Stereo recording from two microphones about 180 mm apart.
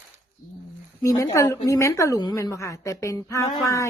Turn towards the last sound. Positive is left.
turn(degrees=15)  # may be behind; listen again after turning